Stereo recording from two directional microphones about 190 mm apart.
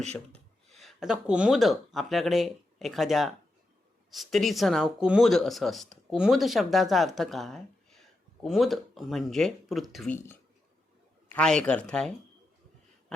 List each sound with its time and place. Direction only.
0.8 s speech: centre (ahead or behind)
11.3 s speech: 5° left (ahead or behind)